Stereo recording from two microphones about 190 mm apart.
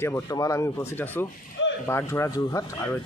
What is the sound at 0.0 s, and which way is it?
Speech, 15° left (ahead or behind).